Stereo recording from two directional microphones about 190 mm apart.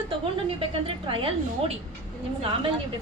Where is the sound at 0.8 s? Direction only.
30° right (ahead or behind).